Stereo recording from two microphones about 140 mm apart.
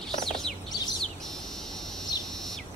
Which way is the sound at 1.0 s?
5° left (ahead or behind).